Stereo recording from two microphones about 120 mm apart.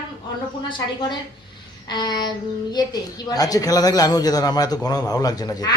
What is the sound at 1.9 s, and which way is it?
Speech, 35° left (ahead or behind).